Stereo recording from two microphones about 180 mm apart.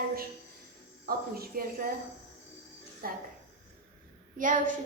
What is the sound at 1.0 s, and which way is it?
Speech, 55° right (ahead or behind).